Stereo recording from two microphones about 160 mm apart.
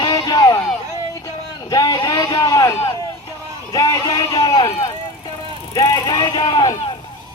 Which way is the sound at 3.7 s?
25° left (ahead or behind).